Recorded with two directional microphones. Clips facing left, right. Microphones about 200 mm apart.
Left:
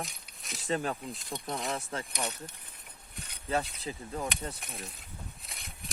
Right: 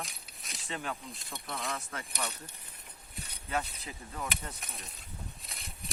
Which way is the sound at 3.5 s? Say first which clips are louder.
Left 4 dB; 30° left (ahead or behind).